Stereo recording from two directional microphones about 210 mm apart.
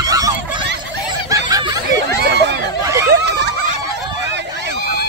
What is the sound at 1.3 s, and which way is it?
Snicker, 15° right (ahead or behind).